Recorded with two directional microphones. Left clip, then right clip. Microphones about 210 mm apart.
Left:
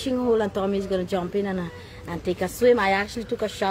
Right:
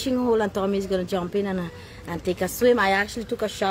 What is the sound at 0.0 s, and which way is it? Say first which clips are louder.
A woman's voice: even; 15° right (ahead or behind).